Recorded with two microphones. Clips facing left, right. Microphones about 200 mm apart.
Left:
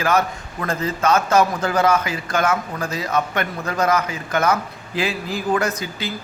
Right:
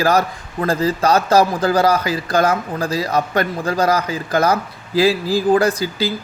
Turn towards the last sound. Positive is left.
turn(degrees=-35)  # may be behind; listen again after turning